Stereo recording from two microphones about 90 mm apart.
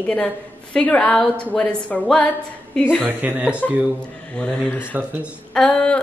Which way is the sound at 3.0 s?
20° right (ahead or behind).